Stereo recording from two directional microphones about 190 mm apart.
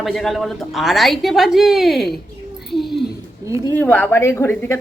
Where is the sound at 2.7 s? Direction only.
Centre (ahead or behind).